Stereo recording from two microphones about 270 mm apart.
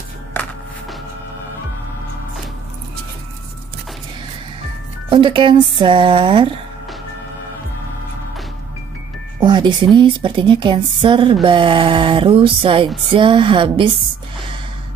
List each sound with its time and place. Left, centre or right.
0.3 s a sound: centre
5.1 s speech: centre
9.4 s a woman's voice: centre